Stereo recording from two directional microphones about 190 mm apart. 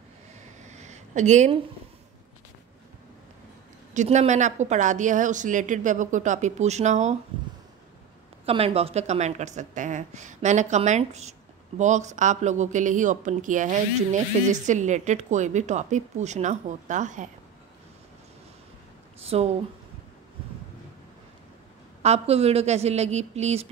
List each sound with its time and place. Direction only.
0.6 s a sound: 40° right (ahead or behind)
3.9 s speech: 40° right (ahead or behind)
8.5 s speech: 30° right (ahead or behind)
19.1 s speech: 35° right (ahead or behind)
22.0 s speech: 35° right (ahead or behind)